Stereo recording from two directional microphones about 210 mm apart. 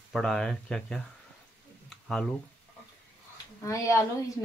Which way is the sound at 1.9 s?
5° left (ahead or behind).